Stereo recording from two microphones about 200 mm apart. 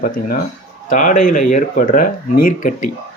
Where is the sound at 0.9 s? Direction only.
40° left (ahead or behind).